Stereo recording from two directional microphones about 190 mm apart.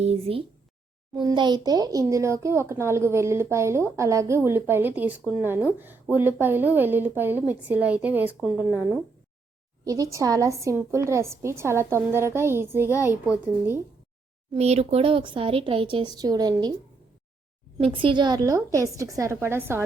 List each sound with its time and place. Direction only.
0.0 s speech: 30° right (ahead or behind); by 8.6 s 5° right (ahead or behind)
9.8 s speech: 20° right (ahead or behind)
14.5 s speech: 35° right (ahead or behind)
17.7 s speech: 25° right (ahead or behind); by 19.8 s 10° right (ahead or behind)